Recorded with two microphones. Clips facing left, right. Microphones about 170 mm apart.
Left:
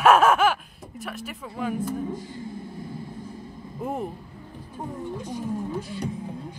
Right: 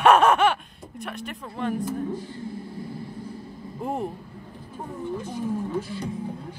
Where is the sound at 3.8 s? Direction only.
Centre (ahead or behind).